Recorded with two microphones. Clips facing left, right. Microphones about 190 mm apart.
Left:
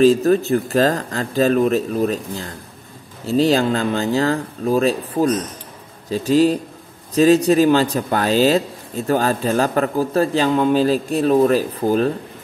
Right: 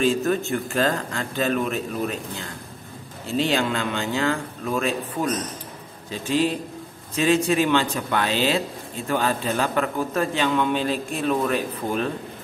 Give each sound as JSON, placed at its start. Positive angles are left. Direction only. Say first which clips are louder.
{"t": 0.0, "sound": "speech", "louder": "left 8 dB", "side_deg": 40}